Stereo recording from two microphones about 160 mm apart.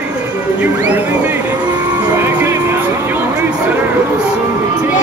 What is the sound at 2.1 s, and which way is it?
Music, 15° right (ahead or behind).